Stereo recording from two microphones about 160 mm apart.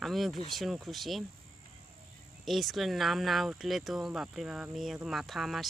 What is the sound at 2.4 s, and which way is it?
Speech, centre (ahead or behind).